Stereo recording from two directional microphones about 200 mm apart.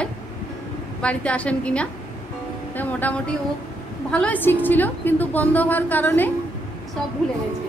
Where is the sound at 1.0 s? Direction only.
5° left (ahead or behind).